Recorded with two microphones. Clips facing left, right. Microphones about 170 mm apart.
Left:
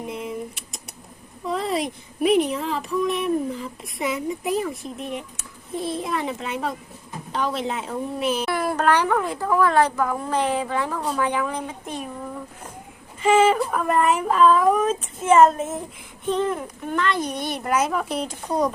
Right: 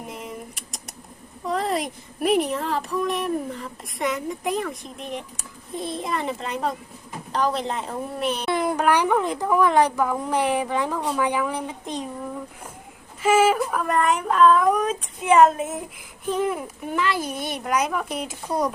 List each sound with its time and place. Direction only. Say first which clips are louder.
0.1 s typing: left 5 dB; centre (ahead or behind)
1.5 s a woman's voice: even; centre (ahead or behind)
8.4 s speech: right 2 dB; 20° right (ahead or behind)
13.2 s a woman's voice: left 1 dB; 5° right (ahead or behind)